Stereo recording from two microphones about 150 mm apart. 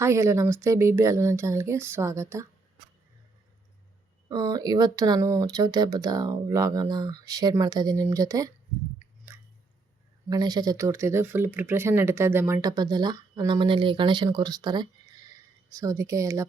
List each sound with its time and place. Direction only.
0.0 s speech: 20° right (ahead or behind)
4.3 s speech: 25° right (ahead or behind)
9.3 s chewing: 15° right (ahead or behind)
10.2 s speech: 25° right (ahead or behind)
12.6 s speech: 25° right (ahead or behind)